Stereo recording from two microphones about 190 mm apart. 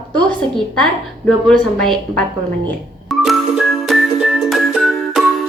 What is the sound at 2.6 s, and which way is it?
Music, centre (ahead or behind).